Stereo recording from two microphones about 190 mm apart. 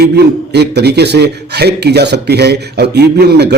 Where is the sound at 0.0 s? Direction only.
60° right (ahead or behind).